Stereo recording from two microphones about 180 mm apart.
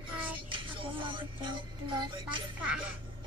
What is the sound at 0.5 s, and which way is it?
Music, 30° right (ahead or behind).